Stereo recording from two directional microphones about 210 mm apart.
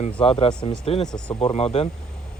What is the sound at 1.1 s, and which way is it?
Speech, 5° left (ahead or behind).